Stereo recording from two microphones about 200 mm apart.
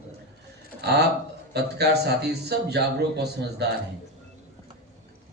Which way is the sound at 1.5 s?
55° right (ahead or behind).